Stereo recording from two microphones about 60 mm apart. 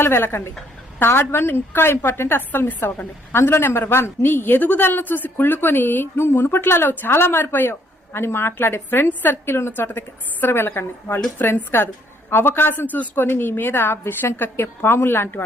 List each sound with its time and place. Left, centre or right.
0.0 s a woman's voice: left